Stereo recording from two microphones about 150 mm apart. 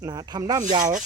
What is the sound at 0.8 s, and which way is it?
Speech, 60° right (ahead or behind).